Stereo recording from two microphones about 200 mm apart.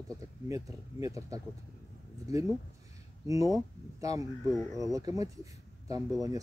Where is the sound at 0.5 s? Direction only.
15° right (ahead or behind).